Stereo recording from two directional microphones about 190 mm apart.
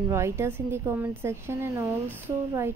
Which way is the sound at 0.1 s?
15° right (ahead or behind).